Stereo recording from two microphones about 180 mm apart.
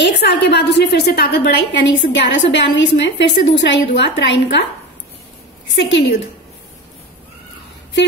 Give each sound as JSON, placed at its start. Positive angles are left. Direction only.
{"t": 0.0, "sound": "a woman's voice", "side_deg": 70}
{"t": 5.8, "sound": "a woman's voice", "side_deg": 75}